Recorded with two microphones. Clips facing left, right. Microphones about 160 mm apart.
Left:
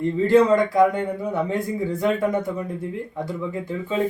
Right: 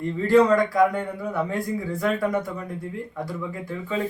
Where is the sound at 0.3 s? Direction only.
20° left (ahead or behind).